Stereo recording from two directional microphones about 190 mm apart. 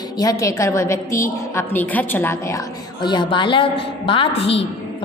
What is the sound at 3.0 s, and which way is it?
A woman's voice, 25° left (ahead or behind).